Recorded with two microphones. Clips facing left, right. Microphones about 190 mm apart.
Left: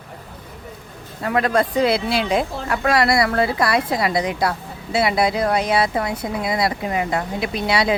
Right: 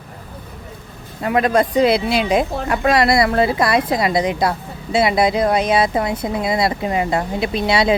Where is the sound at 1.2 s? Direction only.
20° right (ahead or behind).